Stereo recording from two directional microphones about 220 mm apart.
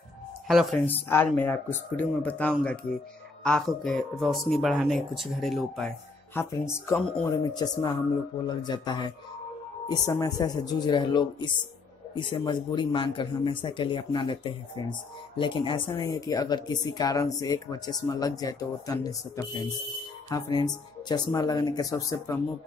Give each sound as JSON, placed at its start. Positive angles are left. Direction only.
{"t": 0.5, "sound": "speech", "side_deg": 0}